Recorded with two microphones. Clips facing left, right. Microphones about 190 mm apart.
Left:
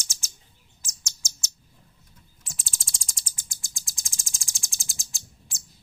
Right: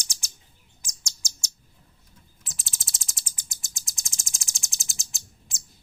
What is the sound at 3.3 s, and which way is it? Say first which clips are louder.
Bird: even; 20° right (ahead or behind).